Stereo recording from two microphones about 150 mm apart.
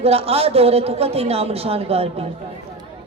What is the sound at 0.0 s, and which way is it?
A man's voice, 40° right (ahead or behind).